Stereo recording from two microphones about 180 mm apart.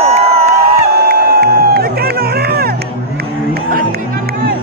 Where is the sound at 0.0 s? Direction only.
35° right (ahead or behind).